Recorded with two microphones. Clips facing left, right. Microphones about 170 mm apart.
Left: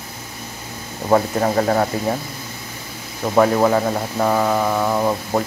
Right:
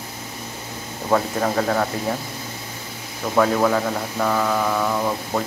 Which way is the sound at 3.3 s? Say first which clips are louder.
Left 3 dB; 20° left (ahead or behind).